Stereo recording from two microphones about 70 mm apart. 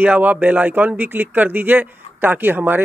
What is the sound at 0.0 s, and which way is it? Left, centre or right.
Speech, right.